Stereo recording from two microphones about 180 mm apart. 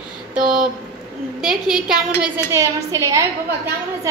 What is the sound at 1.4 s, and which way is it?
A woman's voice, 5° right (ahead or behind).